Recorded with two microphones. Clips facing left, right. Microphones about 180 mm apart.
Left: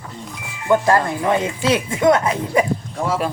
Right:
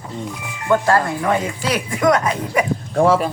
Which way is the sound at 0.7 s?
20° left (ahead or behind).